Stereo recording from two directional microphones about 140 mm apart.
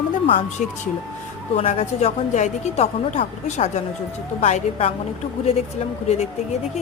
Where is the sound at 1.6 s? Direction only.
45° left (ahead or behind).